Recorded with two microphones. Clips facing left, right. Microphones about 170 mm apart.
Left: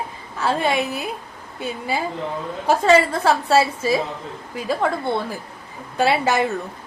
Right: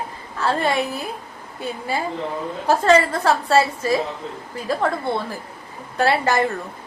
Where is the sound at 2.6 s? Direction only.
5° left (ahead or behind).